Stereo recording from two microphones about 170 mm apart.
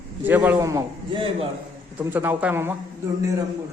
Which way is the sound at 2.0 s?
10° right (ahead or behind).